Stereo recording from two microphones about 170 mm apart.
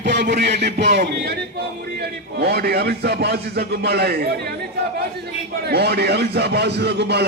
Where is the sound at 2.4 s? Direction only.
70° right (ahead or behind).